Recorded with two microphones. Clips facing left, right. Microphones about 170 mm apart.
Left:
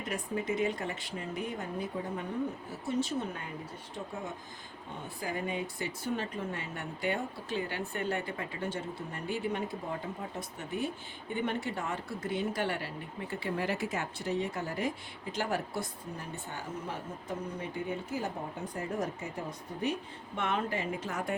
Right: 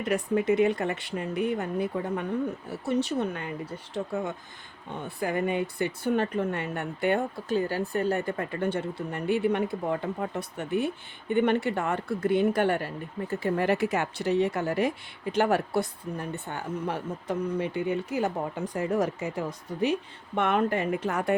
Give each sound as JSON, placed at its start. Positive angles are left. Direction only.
{"t": 0.0, "sound": "speech", "side_deg": -70}
{"t": 5.0, "sound": "speech", "side_deg": -65}
{"t": 7.4, "sound": "speech", "side_deg": -40}
{"t": 13.7, "sound": "speech", "side_deg": -65}